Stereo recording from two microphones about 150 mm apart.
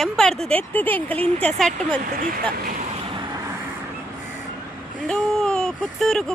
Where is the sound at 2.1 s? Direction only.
70° right (ahead or behind).